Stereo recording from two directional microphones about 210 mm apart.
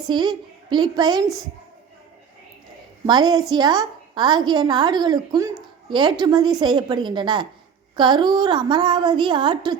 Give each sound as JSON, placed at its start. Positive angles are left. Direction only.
{"t": 0.1, "sound": "a woman's voice", "side_deg": -20}
{"t": 3.1, "sound": "a woman's voice", "side_deg": -20}